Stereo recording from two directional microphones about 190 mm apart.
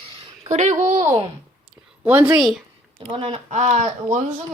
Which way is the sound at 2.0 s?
10° right (ahead or behind).